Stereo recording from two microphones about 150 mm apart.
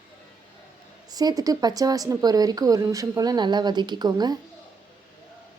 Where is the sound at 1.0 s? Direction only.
25° right (ahead or behind).